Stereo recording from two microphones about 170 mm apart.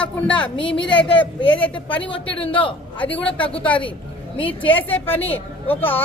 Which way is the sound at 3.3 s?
5° left (ahead or behind).